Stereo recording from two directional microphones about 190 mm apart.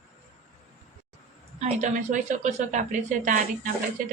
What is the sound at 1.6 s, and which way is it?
A woman's voice, 40° right (ahead or behind).